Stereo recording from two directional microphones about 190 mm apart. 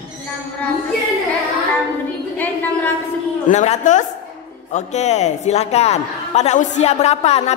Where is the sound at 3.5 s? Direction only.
35° left (ahead or behind).